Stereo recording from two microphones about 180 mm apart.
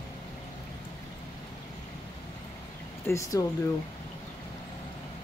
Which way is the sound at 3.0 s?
15° left (ahead or behind).